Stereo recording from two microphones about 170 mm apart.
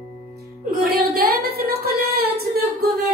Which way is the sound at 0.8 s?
65° right (ahead or behind).